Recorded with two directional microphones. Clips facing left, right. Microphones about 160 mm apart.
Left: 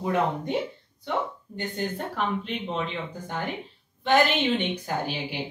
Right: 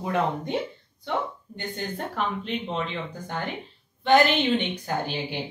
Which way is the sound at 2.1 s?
Centre (ahead or behind).